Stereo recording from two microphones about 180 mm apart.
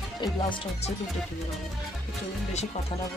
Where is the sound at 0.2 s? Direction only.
25° left (ahead or behind).